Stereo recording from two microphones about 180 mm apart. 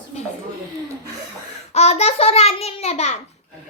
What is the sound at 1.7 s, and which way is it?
A child's voice, 35° left (ahead or behind).